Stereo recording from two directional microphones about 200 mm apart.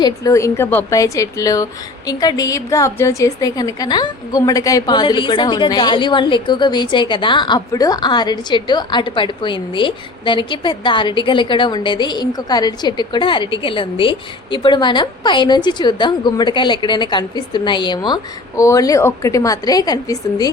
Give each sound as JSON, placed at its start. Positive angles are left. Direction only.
{"t": 0.0, "sound": "a woman's voice", "side_deg": 15}